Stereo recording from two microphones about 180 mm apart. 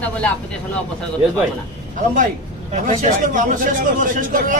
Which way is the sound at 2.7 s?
45° right (ahead or behind).